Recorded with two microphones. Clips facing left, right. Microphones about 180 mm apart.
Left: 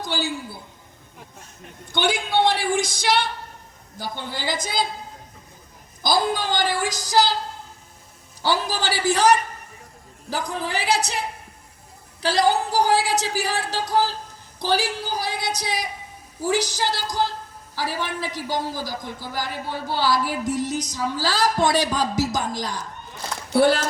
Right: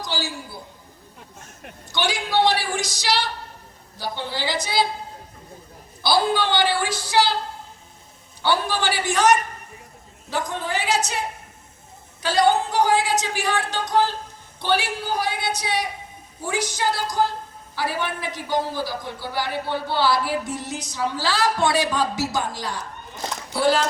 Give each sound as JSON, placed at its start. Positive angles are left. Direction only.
{"t": 0.0, "sound": "a woman's voice", "side_deg": 55}
{"t": 1.9, "sound": "a woman's voice", "side_deg": 55}
{"t": 6.0, "sound": "a woman's voice", "side_deg": 45}
{"t": 8.4, "sound": "speech", "side_deg": 35}
{"t": 12.2, "sound": "speech", "side_deg": 35}
{"t": 23.5, "sound": "speech", "side_deg": 60}